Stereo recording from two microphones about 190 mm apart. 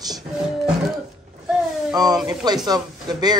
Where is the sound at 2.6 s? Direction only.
20° right (ahead or behind).